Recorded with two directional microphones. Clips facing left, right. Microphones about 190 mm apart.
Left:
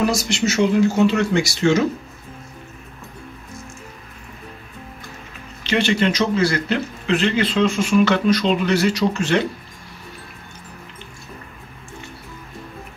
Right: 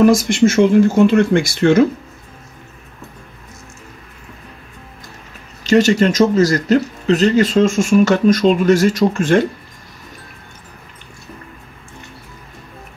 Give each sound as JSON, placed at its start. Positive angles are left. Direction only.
{"t": 0.0, "sound": "speech", "side_deg": -50}
{"t": 5.6, "sound": "speech", "side_deg": -45}